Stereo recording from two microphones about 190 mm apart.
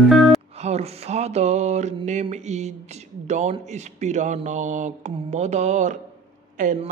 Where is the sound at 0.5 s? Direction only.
35° right (ahead or behind).